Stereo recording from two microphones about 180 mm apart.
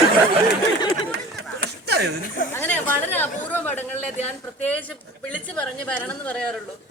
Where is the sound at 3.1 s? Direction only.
10° left (ahead or behind).